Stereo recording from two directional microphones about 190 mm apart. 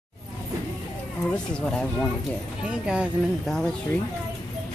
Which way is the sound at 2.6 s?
5° right (ahead or behind).